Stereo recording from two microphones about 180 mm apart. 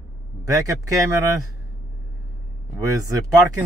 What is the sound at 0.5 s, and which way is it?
Speech, 20° right (ahead or behind).